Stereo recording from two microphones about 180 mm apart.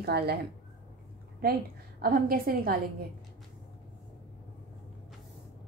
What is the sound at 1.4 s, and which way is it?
A woman's voice, 55° right (ahead or behind).